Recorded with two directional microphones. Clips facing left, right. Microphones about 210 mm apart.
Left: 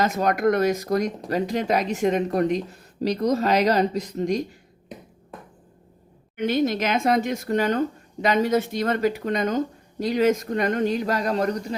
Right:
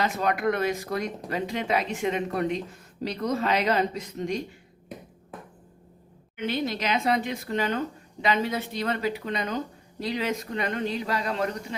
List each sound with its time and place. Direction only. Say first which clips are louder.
0.0 s speech: left 5 dB; 40° left (ahead or behind)
6.3 s speech: left 6 dB; 45° left (ahead or behind)